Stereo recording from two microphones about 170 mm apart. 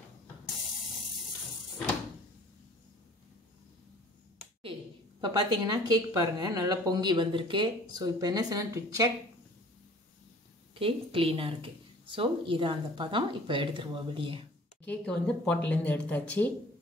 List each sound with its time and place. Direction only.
5.2 s a woman's voice: 25° right (ahead or behind)
10.7 s speech: 30° right (ahead or behind)
14.9 s speech: 5° left (ahead or behind)